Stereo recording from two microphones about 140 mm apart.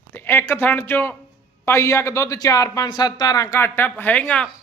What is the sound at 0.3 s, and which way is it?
A man's voice, 15° left (ahead or behind).